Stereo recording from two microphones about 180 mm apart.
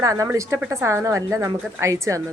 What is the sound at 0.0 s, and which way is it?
A woman's voice, 20° right (ahead or behind).